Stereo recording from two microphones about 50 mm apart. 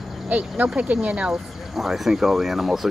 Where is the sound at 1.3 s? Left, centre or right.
Centre.